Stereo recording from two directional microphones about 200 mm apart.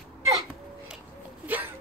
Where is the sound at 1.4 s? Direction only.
10° right (ahead or behind).